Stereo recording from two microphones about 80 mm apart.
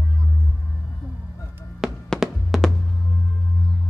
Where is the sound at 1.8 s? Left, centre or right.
Centre.